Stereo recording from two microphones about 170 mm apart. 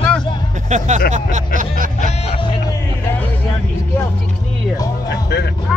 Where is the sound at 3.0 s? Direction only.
15° left (ahead or behind).